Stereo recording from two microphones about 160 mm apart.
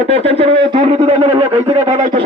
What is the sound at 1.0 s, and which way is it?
A man's voice, 45° right (ahead or behind).